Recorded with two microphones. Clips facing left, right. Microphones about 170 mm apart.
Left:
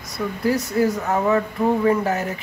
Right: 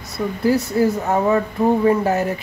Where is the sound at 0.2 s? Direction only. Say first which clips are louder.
Right 3 dB; 25° right (ahead or behind).